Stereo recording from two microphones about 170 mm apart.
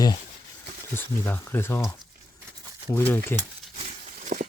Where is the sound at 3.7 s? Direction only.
45° right (ahead or behind).